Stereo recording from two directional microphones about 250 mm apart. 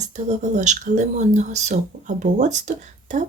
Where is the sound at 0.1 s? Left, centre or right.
Right.